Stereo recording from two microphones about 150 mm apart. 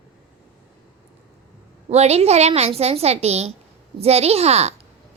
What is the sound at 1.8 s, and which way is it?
A woman's voice, 45° right (ahead or behind).